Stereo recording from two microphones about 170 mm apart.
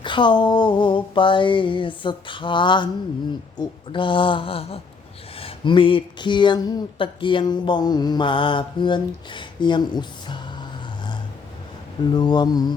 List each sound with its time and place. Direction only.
0.0 s speech: 30° left (ahead or behind)
12.1 s speech: 25° left (ahead or behind)